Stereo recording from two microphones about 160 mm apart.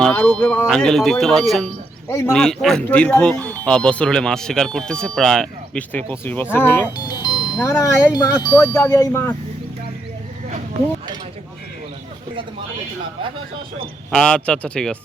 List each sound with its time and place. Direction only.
0.0 s speech: 5° left (ahead or behind)
2.0 s speech: 15° left (ahead or behind)
2.3 s speech: 5° left (ahead or behind)
6.9 s music: 25° left (ahead or behind)
7.6 s speech: 15° left (ahead or behind)
14.1 s speech: 5° left (ahead or behind)